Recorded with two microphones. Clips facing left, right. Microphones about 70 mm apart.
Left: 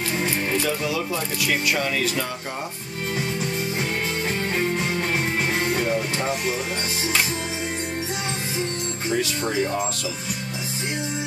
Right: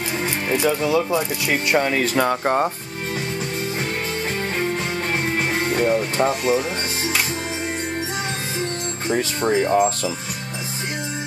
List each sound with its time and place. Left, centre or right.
0.2 s speech: right
2.1 s speech: right
5.2 s music: centre
6.1 s speech: right
9.1 s speech: right